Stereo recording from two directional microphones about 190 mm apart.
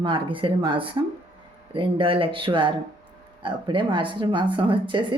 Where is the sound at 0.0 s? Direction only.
25° right (ahead or behind).